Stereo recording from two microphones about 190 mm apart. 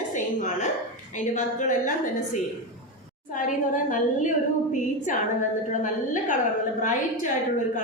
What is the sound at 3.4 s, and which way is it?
A woman's voice, 45° left (ahead or behind).